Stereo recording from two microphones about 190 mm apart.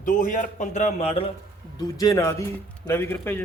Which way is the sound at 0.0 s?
45° left (ahead or behind).